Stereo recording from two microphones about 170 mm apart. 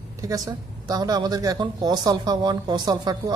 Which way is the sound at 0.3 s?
20° right (ahead or behind).